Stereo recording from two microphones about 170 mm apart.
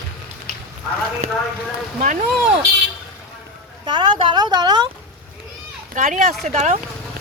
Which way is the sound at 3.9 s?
30° right (ahead or behind).